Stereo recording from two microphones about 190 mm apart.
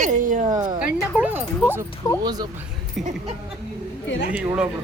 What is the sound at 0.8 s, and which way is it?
Music, 5° right (ahead or behind).